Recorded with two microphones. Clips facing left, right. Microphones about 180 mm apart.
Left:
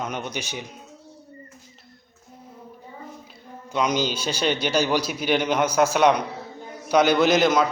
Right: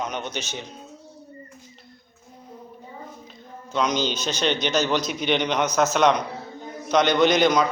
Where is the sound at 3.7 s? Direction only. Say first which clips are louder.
Even; 10° left (ahead or behind).